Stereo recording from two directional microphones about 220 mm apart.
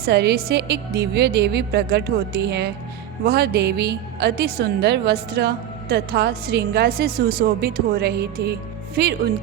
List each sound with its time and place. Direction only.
0.0 s a woman's voice: 50° right (ahead or behind)